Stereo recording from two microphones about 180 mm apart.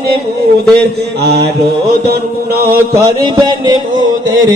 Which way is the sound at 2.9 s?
20° right (ahead or behind).